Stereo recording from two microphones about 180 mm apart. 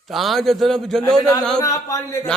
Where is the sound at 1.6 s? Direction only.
20° left (ahead or behind).